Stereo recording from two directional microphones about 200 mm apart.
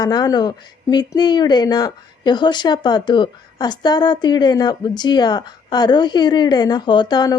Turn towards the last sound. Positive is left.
turn(degrees=20)  # may be behind; listen again after turning